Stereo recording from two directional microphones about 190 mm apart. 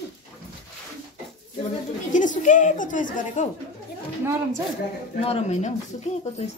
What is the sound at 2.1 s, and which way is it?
A woman's voice, 40° left (ahead or behind).